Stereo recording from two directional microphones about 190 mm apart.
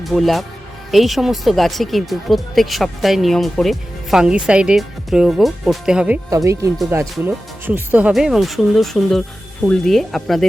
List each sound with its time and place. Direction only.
0.0 s speech: centre (ahead or behind)
6.3 s speech: 15° right (ahead or behind); by 10.4 s centre (ahead or behind)